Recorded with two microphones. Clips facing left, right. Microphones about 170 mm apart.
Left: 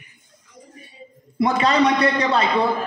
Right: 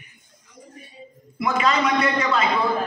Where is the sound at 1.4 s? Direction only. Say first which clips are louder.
Left 4 dB; 35° left (ahead or behind).